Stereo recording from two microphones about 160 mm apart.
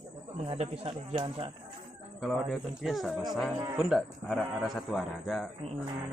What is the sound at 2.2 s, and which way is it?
Speech, centre (ahead or behind).